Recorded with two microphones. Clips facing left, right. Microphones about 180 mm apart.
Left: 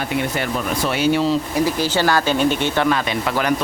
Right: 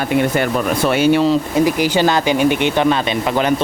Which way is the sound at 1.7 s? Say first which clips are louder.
Right 4 dB; 15° right (ahead or behind).